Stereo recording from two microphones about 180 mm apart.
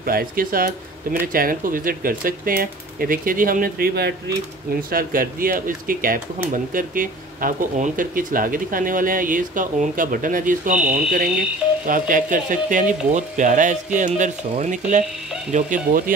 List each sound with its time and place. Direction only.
0.0 s speech: 55° right (ahead or behind)
4.9 s speech: 50° right (ahead or behind)